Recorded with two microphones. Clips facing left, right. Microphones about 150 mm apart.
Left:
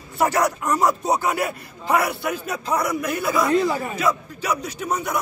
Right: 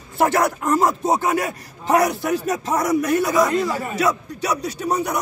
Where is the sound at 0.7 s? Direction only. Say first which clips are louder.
Right 2 dB; 25° right (ahead or behind).